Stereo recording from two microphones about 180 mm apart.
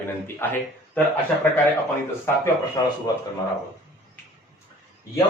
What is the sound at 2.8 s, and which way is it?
Speech, 20° left (ahead or behind).